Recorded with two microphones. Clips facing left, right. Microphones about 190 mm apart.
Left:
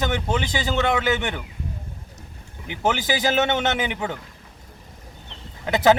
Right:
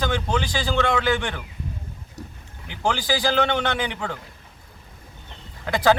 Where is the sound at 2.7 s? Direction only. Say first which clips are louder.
Left 1 dB; 20° left (ahead or behind).